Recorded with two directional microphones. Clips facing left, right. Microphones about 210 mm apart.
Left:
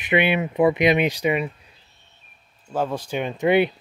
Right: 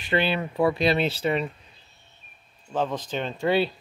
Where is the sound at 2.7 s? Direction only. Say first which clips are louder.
Left 2 dB; 10° left (ahead or behind).